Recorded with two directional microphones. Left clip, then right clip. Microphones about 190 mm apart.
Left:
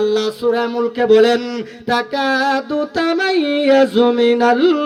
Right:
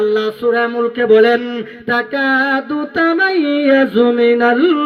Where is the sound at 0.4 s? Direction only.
25° right (ahead or behind).